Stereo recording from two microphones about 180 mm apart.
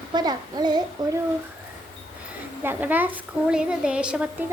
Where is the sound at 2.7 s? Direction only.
10° right (ahead or behind).